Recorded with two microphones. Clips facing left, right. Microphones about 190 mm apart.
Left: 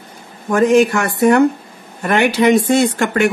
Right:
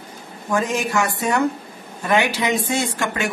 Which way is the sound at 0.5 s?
60° left (ahead or behind).